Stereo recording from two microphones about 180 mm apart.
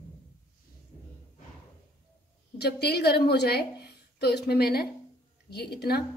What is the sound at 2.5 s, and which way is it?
A woman's voice, 65° left (ahead or behind).